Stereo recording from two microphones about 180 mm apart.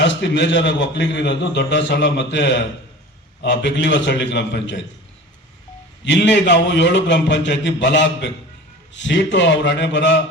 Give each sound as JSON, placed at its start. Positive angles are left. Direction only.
{"t": 0.0, "sound": "a man's voice", "side_deg": 75}
{"t": 6.1, "sound": "a man's voice", "side_deg": 80}